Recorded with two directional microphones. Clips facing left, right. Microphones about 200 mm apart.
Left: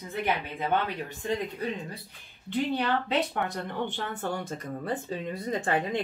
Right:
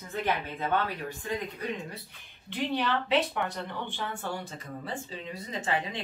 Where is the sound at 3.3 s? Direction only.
45° left (ahead or behind).